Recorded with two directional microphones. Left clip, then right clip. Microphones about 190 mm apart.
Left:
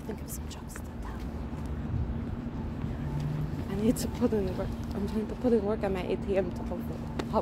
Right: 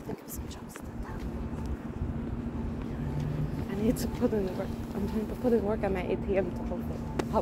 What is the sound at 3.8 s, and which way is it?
Speech, 20° left (ahead or behind).